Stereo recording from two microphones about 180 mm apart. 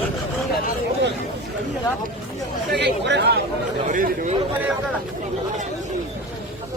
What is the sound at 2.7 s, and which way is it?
Speech, 70° right (ahead or behind).